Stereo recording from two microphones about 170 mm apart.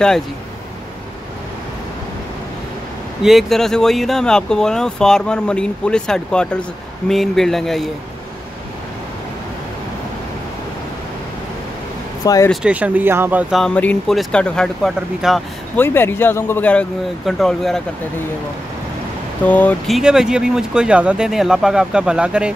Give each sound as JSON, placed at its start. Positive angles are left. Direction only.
{"t": 3.2, "sound": "speech", "side_deg": 0}
{"t": 12.2, "sound": "speech", "side_deg": 20}
{"t": 12.6, "sound": "speech", "side_deg": -10}
{"t": 13.6, "sound": "speech", "side_deg": 5}
{"t": 15.8, "sound": "speech", "side_deg": 10}
{"t": 19.4, "sound": "speech", "side_deg": 10}
{"t": 20.0, "sound": "speech", "side_deg": -5}